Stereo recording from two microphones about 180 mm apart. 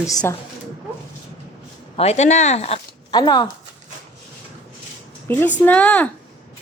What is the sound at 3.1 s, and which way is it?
Speech, 25° left (ahead or behind).